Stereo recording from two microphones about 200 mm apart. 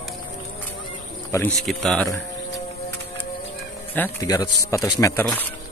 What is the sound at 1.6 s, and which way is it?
Speech, centre (ahead or behind).